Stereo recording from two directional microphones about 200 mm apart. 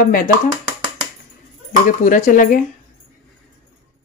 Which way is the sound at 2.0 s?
40° left (ahead or behind).